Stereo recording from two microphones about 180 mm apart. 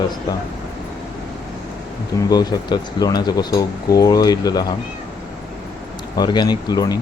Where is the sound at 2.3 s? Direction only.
25° left (ahead or behind).